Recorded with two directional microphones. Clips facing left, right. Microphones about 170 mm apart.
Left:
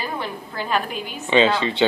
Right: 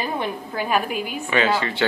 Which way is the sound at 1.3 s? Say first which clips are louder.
Left 4 dB; 20° left (ahead or behind).